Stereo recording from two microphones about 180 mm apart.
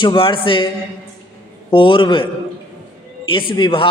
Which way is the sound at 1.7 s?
25° left (ahead or behind).